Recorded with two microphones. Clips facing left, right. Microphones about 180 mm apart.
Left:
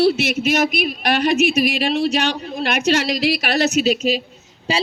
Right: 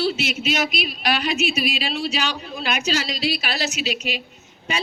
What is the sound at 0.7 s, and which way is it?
A man's voice, 55° left (ahead or behind).